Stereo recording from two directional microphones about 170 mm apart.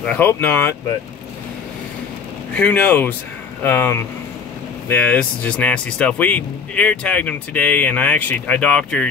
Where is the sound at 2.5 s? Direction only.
10° left (ahead or behind).